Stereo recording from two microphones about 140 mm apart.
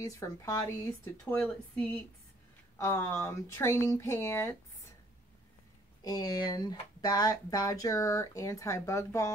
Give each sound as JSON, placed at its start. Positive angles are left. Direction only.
{"t": 0.0, "sound": "speech", "side_deg": 20}
{"t": 1.3, "sound": "speech", "side_deg": 10}
{"t": 2.8, "sound": "speech", "side_deg": 20}
{"t": 6.0, "sound": "speech", "side_deg": 25}